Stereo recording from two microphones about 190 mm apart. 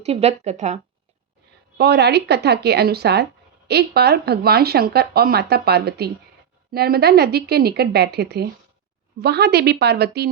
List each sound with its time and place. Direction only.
0.0 s a woman's voice: 35° right (ahead or behind)
1.8 s speech: 60° right (ahead or behind)